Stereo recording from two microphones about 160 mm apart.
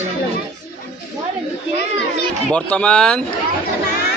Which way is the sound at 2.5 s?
5° left (ahead or behind).